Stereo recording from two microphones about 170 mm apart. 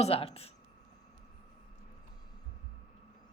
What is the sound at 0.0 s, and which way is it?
Speech, 35° left (ahead or behind).